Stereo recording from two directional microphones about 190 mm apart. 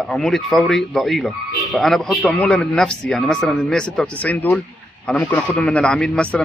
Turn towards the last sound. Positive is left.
turn(degrees=5)  # may be behind; listen again after turning